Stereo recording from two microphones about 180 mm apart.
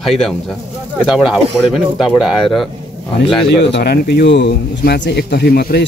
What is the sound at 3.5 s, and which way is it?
Speech, 70° left (ahead or behind).